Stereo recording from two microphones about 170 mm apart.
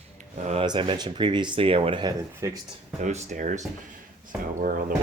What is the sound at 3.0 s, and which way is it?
Speech, 45° right (ahead or behind).